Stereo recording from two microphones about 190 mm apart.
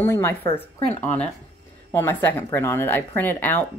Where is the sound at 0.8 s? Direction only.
35° left (ahead or behind).